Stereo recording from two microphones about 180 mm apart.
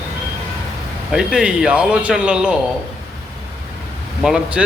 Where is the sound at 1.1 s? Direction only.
5° right (ahead or behind).